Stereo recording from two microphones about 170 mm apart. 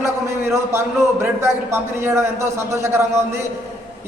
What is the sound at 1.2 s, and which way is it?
A man's voice, 15° right (ahead or behind).